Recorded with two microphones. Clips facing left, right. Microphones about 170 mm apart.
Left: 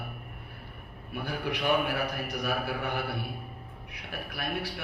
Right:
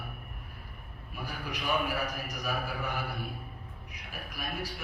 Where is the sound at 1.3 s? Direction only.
65° left (ahead or behind).